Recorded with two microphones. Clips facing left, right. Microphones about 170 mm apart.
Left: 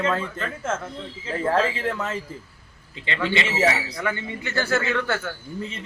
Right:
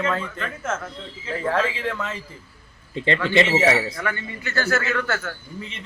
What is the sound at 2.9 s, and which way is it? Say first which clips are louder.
Speech: right 6 dB; 40° right (ahead or behind).